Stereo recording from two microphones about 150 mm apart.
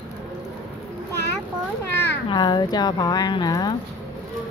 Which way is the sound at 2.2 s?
30° left (ahead or behind).